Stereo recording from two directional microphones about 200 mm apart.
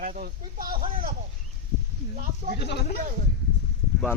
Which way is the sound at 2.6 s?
55° left (ahead or behind).